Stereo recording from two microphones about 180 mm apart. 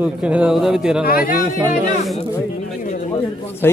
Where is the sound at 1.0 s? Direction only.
55° left (ahead or behind).